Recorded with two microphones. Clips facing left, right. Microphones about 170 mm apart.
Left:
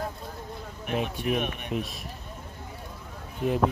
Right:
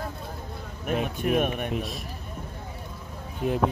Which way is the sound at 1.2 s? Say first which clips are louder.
Right 4 dB; 50° right (ahead or behind).